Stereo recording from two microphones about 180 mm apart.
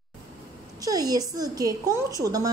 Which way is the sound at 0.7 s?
20° right (ahead or behind).